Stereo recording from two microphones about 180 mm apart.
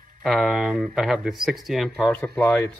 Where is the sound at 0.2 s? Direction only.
Centre (ahead or behind).